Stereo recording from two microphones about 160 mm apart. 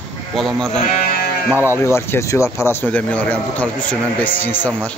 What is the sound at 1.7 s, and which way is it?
A man's voice, 15° left (ahead or behind).